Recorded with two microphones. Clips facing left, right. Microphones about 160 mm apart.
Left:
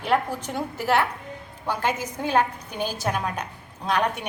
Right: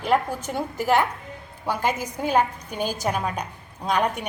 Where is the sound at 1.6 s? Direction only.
10° right (ahead or behind).